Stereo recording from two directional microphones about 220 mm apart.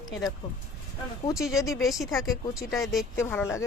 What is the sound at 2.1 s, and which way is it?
Speech, 15° left (ahead or behind).